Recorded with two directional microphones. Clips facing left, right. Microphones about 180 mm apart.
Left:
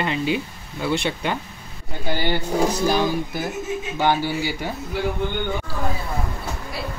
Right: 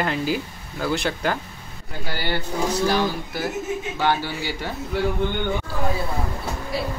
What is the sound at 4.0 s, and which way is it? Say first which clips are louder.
Speech: left 4 dB; 15° left (ahead or behind).